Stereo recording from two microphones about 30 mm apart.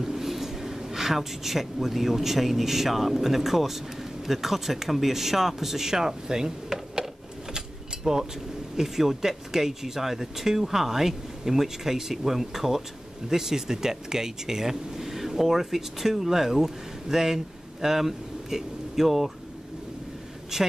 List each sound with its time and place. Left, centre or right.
0.0 s a woman's voice: centre
7.5 s keys jangling: right
8.7 s speech: centre
20.5 s speech: centre